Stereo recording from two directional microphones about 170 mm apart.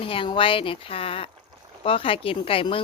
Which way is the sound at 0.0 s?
30° left (ahead or behind).